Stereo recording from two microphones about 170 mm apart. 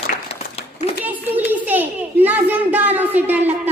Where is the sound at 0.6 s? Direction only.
35° left (ahead or behind).